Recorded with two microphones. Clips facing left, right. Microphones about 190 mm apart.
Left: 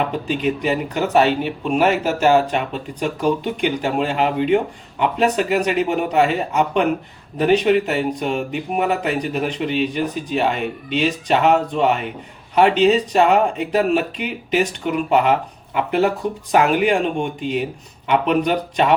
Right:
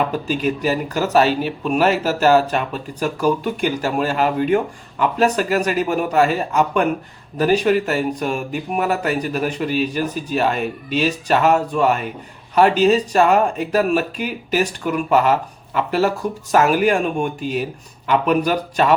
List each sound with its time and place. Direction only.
0.1 s speech: 20° left (ahead or behind)